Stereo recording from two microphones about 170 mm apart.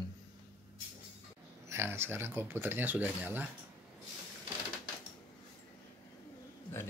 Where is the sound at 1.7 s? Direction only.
15° right (ahead or behind).